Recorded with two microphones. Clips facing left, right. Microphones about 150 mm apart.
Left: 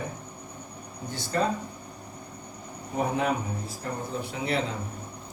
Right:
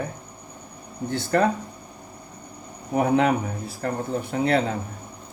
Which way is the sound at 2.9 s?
70° right (ahead or behind).